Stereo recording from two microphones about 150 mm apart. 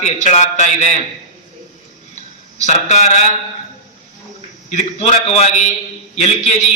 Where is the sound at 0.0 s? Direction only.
50° left (ahead or behind).